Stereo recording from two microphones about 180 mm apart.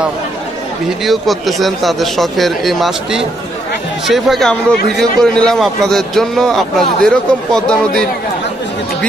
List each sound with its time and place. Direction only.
1.0 s a man's voice: centre (ahead or behind)